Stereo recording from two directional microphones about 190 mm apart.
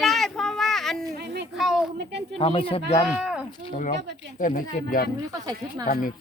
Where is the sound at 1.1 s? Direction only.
60° right (ahead or behind).